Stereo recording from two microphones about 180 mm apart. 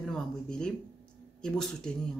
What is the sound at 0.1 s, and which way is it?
Speech, 5° left (ahead or behind).